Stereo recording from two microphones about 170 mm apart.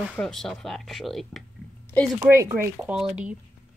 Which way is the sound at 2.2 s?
15° right (ahead or behind).